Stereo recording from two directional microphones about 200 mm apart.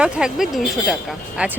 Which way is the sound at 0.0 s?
5° right (ahead or behind).